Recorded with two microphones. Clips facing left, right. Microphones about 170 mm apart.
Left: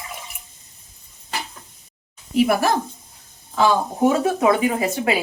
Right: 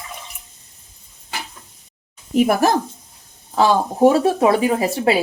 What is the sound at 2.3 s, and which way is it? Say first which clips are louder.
Speech: right 2 dB; 45° right (ahead or behind).